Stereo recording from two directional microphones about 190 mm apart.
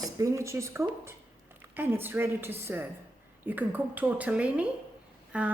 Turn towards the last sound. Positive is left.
turn(degrees=-5)  # may be behind; listen again after turning